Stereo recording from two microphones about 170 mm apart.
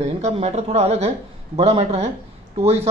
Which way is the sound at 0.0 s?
40° right (ahead or behind).